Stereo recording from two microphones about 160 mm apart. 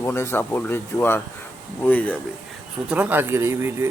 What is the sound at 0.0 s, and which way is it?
Speech, 15° left (ahead or behind).